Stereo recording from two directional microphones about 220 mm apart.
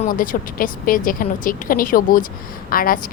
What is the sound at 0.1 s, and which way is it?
Speech, 40° left (ahead or behind).